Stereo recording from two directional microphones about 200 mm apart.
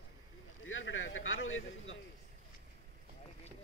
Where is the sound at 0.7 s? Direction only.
80° left.